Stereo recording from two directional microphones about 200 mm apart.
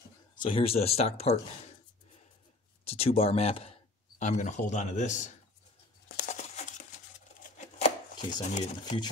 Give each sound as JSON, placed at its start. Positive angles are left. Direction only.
{"t": 0.4, "sound": "speech", "side_deg": 25}
{"t": 2.8, "sound": "speech", "side_deg": 30}
{"t": 6.1, "sound": "a sound", "side_deg": 35}
{"t": 7.3, "sound": "chopping", "side_deg": 40}